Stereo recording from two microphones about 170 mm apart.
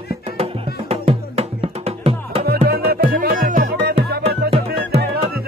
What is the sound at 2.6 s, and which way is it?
Music, 65° right (ahead or behind).